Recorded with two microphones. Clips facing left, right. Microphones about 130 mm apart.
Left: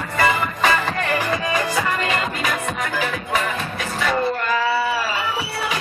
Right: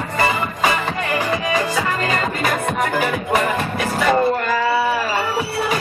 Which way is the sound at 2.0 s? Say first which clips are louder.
Right 3 dB; 40° right (ahead or behind).